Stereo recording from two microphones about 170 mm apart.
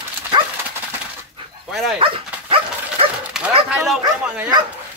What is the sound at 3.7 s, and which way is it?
Speech, centre (ahead or behind).